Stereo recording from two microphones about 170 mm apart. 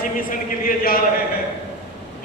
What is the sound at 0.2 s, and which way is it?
Speech, 55° left (ahead or behind).